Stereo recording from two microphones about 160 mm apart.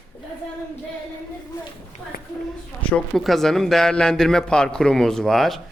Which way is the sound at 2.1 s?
70° left (ahead or behind).